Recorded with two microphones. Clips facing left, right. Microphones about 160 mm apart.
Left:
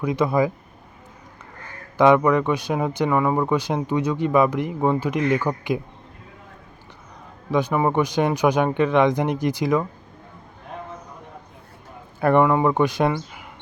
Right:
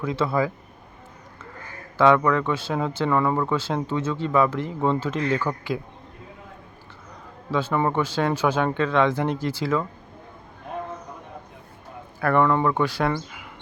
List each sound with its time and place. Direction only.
0.0 s speech: 15° left (ahead or behind)
2.0 s speech: 15° left (ahead or behind)
7.5 s speech: 15° left (ahead or behind)
12.2 s speech: 20° left (ahead or behind)